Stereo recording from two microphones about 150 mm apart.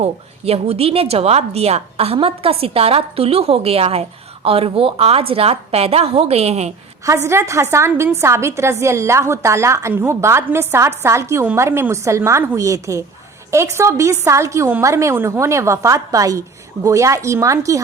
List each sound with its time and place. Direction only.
0.0 s a woman's voice: 45° right (ahead or behind)
7.0 s a woman's voice: 20° right (ahead or behind)